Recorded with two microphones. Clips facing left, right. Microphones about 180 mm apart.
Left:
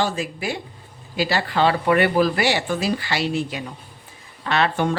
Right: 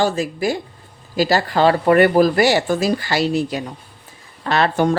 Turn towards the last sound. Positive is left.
turn(degrees=-40)  # may be behind; listen again after turning